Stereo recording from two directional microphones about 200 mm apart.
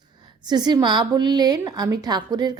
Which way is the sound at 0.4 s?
20° right (ahead or behind).